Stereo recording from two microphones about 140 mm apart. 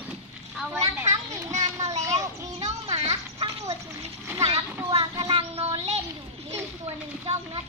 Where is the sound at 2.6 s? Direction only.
50° right (ahead or behind).